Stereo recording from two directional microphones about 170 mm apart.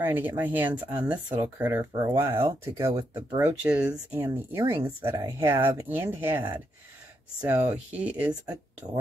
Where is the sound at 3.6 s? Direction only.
5° right (ahead or behind).